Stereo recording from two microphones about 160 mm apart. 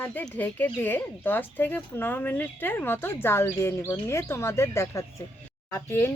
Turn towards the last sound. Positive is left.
turn(degrees=15)  # may be behind; listen again after turning